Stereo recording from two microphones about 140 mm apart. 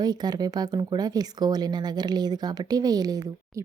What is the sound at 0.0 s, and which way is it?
Speech, 30° right (ahead or behind).